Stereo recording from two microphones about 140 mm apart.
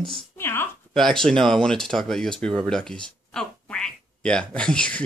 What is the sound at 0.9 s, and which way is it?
Speech, 5° left (ahead or behind).